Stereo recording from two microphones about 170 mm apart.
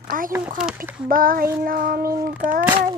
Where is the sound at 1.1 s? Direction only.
55° right (ahead or behind).